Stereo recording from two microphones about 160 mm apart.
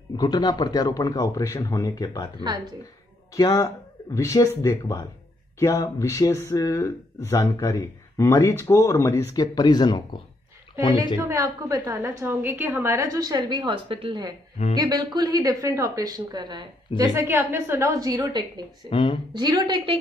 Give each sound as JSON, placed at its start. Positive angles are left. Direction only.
{"t": 0.1, "sound": "speech", "side_deg": 25}
{"t": 3.3, "sound": "a woman's voice", "side_deg": 20}
{"t": 11.1, "sound": "a woman's voice", "side_deg": -15}
{"t": 18.9, "sound": "a woman's voice", "side_deg": 35}
{"t": 19.3, "sound": "a woman's voice", "side_deg": -25}